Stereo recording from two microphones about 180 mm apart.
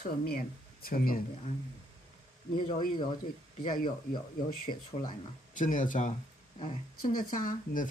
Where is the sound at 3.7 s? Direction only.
50° left (ahead or behind).